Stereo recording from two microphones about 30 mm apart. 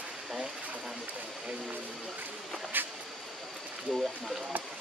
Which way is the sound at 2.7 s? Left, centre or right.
Right.